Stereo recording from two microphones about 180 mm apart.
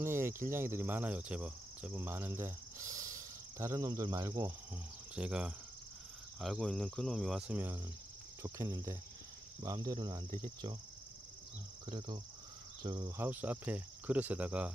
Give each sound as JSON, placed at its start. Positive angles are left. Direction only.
{"t": 0.0, "sound": "cricket", "side_deg": -15}
{"t": 5.1, "sound": "cricket", "side_deg": -5}
{"t": 6.4, "sound": "speech", "side_deg": 0}
{"t": 8.4, "sound": "cricket", "side_deg": -15}
{"t": 11.8, "sound": "cricket", "side_deg": -25}
{"t": 13.2, "sound": "cricket", "side_deg": -10}